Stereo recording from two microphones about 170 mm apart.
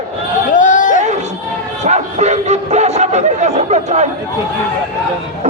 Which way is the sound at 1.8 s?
40° right (ahead or behind).